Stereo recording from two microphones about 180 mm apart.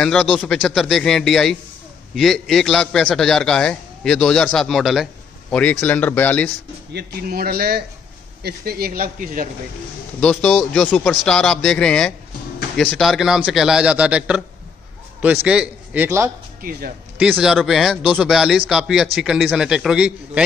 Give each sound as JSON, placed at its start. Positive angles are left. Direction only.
{"t": 0.0, "sound": "a man's voice", "side_deg": 0}
{"t": 6.9, "sound": "speech", "side_deg": -60}
{"t": 10.2, "sound": "a man's voice", "side_deg": 5}